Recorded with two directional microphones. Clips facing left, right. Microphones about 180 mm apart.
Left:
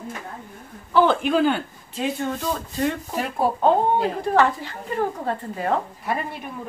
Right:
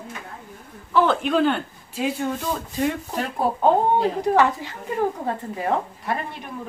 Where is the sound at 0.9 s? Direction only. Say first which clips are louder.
Left 1 dB; centre (ahead or behind).